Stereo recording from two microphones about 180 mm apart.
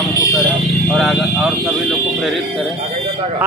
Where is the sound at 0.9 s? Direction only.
Centre (ahead or behind).